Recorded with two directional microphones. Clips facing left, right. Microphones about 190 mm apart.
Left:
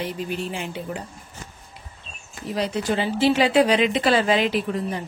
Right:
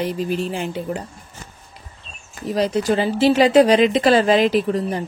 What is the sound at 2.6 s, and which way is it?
Speech, 40° right (ahead or behind).